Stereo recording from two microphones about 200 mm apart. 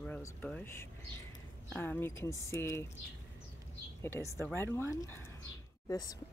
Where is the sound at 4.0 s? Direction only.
15° left (ahead or behind).